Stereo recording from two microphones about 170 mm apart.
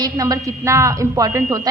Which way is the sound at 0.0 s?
20° right (ahead or behind).